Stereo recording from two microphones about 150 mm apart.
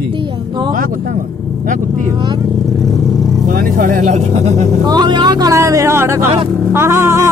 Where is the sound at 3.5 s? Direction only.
65° right (ahead or behind); by 4.7 s 50° right (ahead or behind).